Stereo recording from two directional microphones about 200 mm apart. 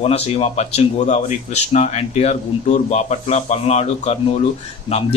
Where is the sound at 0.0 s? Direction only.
30° left (ahead or behind).